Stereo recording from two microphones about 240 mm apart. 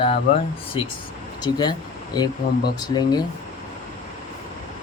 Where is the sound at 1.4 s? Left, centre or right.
Centre.